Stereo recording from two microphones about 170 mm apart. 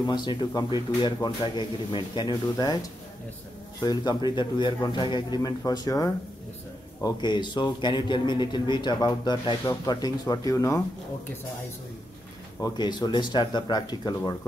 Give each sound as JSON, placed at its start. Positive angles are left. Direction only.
{"t": 0.0, "sound": "a man's voice", "side_deg": 25}
{"t": 3.8, "sound": "a man's voice", "side_deg": 25}
{"t": 12.5, "sound": "a man's voice", "side_deg": 25}